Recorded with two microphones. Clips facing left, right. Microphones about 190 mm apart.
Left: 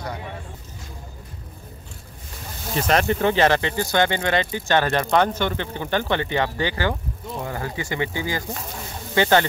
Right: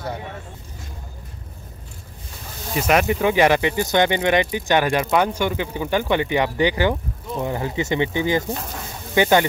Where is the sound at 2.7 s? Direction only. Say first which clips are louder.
Right 2 dB; 10° right (ahead or behind).